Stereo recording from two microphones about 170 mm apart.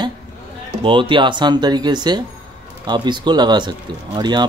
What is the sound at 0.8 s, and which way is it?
Speech, 30° right (ahead or behind).